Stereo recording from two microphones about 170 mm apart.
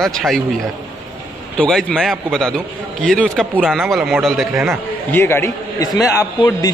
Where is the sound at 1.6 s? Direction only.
5° left (ahead or behind).